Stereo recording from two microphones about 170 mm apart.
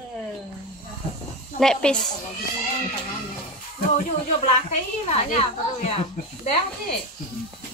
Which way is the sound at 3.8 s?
45° left (ahead or behind).